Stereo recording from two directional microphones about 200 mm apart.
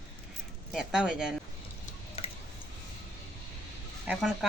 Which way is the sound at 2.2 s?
30° left (ahead or behind).